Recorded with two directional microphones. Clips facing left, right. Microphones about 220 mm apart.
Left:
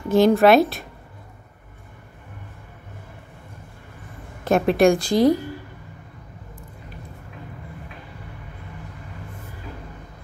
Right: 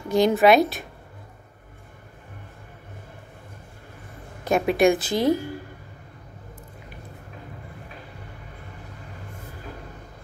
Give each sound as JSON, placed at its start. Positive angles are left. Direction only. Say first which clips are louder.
{"t": 0.1, "sound": "a woman's voice", "louder": "left 3 dB", "side_deg": 0}
{"t": 4.5, "sound": "a woman's voice", "louder": "left 2 dB", "side_deg": 0}